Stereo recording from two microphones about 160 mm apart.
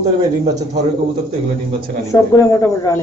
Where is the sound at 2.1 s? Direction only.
20° left (ahead or behind).